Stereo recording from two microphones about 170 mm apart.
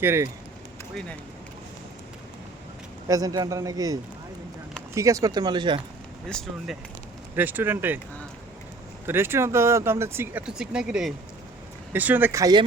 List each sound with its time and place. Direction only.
0.0 s speech: 15° right (ahead or behind)
3.1 s a man's voice: 20° right (ahead or behind)
4.9 s a man's voice: 20° right (ahead or behind)
6.2 s speech: 5° left (ahead or behind)
7.3 s speech: 10° right (ahead or behind)
9.0 s speech: 15° right (ahead or behind)